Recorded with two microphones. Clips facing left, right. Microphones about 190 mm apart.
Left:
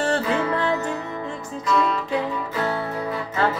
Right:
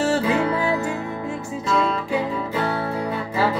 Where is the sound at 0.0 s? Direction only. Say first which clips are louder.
Right 2 dB; 5° right (ahead or behind).